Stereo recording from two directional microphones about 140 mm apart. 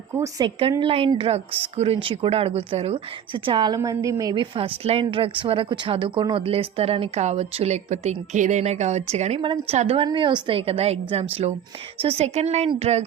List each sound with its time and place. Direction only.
0.1 s a woman's voice: 20° right (ahead or behind)
0.8 s a woman's voice: 40° right (ahead or behind)
3.8 s a woman's voice: 25° right (ahead or behind); by 9.4 s 55° right (ahead or behind)
9.4 s a woman's voice: 40° right (ahead or behind)
10.1 s a woman's voice: 35° right (ahead or behind); by 13.1 s 50° right (ahead or behind)